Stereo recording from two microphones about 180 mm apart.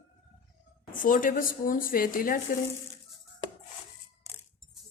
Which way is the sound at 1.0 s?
50° left (ahead or behind).